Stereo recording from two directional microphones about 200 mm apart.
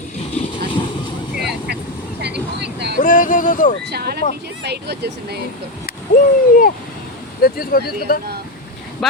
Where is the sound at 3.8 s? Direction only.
55° right (ahead or behind).